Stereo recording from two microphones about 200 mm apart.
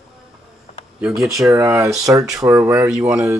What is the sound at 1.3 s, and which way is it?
Speech, 15° right (ahead or behind).